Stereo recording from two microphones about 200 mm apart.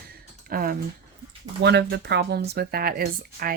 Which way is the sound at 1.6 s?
60° right (ahead or behind).